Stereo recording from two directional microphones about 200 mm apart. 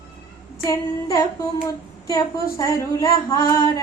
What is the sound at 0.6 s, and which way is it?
Speech, 15° left (ahead or behind).